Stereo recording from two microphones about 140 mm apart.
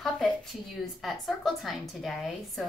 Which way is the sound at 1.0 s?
Centre (ahead or behind).